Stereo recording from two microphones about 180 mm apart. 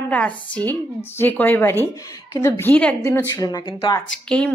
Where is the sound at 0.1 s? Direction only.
5° left (ahead or behind).